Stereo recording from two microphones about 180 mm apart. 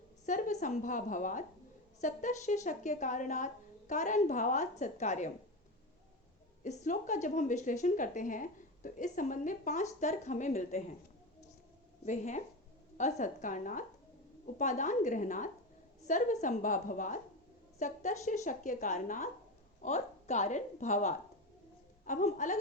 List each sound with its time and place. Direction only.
0.3 s a woman's voice: 45° left (ahead or behind)
6.7 s a woman's voice: 45° left (ahead or behind)
12.0 s a woman's voice: 40° left (ahead or behind)